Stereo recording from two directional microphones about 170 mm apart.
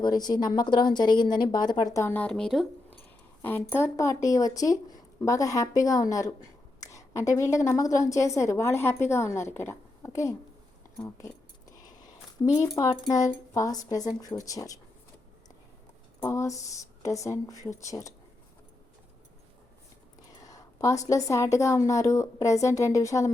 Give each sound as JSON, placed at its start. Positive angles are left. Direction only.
{"t": 0.0, "sound": "speech", "side_deg": 25}
{"t": 3.4, "sound": "a woman's voice", "side_deg": 15}
{"t": 12.4, "sound": "speech", "side_deg": 20}
{"t": 16.2, "sound": "speech", "side_deg": 15}
{"t": 20.3, "sound": "a sound", "side_deg": 20}
{"t": 21.1, "sound": "speech", "side_deg": 20}